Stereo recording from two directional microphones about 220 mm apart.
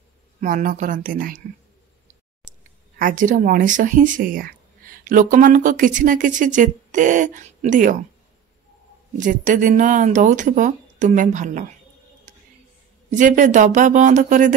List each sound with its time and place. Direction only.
0.4 s speech: 35° right (ahead or behind)
3.0 s speech: 35° right (ahead or behind)
9.2 s speech: 35° right (ahead or behind)
13.1 s speech: 35° right (ahead or behind)